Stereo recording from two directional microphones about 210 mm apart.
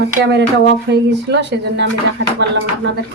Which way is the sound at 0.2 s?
55° right (ahead or behind).